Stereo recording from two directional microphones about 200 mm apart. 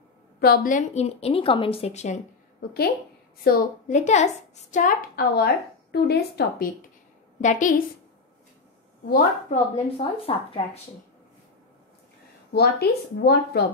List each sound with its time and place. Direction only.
0.4 s a woman's voice: 45° left (ahead or behind)
3.4 s a woman's voice: 40° left (ahead or behind)
7.4 s a woman's voice: 40° left (ahead or behind)
9.1 s a woman's voice: 35° left (ahead or behind)
12.5 s a woman's voice: 55° left (ahead or behind)